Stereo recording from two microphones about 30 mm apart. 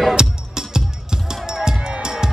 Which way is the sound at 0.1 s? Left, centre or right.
Right.